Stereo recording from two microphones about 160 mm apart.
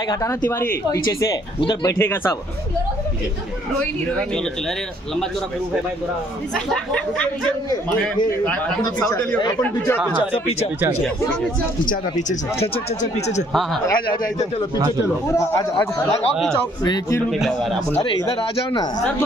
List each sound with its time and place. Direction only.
0.1 s speech: 20° left (ahead or behind)
6.5 s speech: 5° left (ahead or behind)
11.8 s speech: 60° left (ahead or behind)
13.8 s speech: 20° left (ahead or behind)
16.8 s speech: 25° left (ahead or behind)
17.3 s speech: centre (ahead or behind)
17.9 s speech: 25° left (ahead or behind)